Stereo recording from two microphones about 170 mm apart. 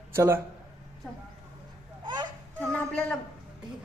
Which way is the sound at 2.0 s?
25° right (ahead or behind).